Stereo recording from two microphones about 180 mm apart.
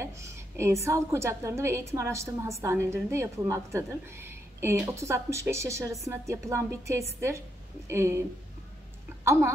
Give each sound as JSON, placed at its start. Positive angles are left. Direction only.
{"t": 0.8, "sound": "a woman's voice", "side_deg": -15}